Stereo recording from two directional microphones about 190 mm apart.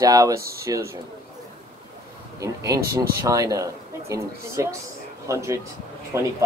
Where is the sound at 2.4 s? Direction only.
15° right (ahead or behind).